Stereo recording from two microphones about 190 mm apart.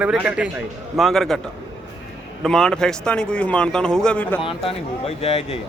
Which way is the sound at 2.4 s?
5° left (ahead or behind).